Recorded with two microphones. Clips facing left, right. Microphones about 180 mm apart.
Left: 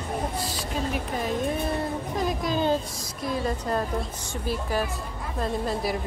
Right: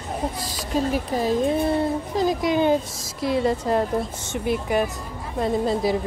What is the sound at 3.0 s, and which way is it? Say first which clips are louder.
Speech: right 6 dB; 85° right.